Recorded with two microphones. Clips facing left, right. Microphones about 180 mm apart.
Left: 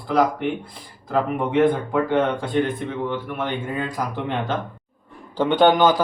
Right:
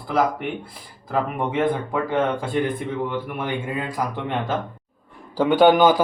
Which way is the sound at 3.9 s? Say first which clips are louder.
Even; centre (ahead or behind).